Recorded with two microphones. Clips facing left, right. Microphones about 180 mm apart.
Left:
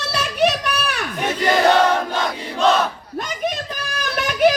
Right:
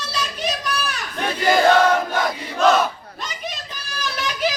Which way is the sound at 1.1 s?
20° left (ahead or behind).